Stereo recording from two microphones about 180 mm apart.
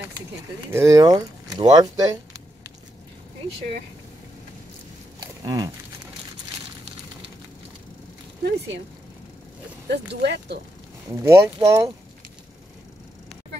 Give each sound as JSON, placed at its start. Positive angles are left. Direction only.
{"t": 0.7, "sound": "speech", "side_deg": -15}
{"t": 5.4, "sound": "speech", "side_deg": -20}
{"t": 8.5, "sound": "speech", "side_deg": -75}
{"t": 9.8, "sound": "speech", "side_deg": -70}
{"t": 11.1, "sound": "speech", "side_deg": -15}